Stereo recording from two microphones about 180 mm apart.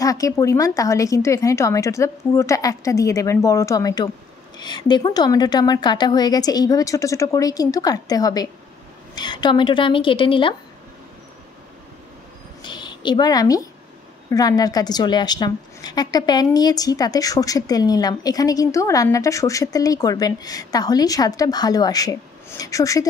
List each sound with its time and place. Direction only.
0.0 s a woman's voice: 20° left (ahead or behind)
12.6 s a woman's voice: 25° left (ahead or behind)